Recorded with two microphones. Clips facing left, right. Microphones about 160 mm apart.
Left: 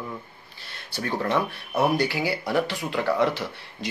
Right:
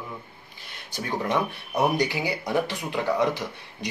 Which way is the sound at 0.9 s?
15° right (ahead or behind).